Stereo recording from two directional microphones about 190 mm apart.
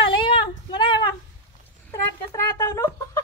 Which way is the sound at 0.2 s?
25° left (ahead or behind).